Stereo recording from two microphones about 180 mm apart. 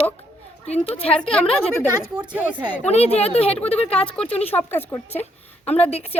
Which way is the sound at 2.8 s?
35° left (ahead or behind).